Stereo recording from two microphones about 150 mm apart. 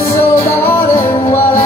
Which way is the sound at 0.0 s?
15° left (ahead or behind).